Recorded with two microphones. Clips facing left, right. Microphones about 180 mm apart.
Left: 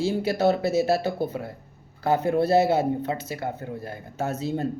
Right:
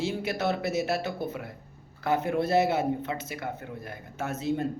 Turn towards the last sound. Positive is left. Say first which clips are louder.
# left 2 dB
turn(degrees=30)  # may be behind; listen again after turning